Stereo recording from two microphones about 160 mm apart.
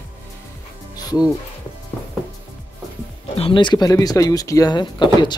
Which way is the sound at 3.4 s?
30° left (ahead or behind).